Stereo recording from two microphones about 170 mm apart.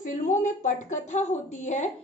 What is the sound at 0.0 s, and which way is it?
A woman's voice, 45° left (ahead or behind).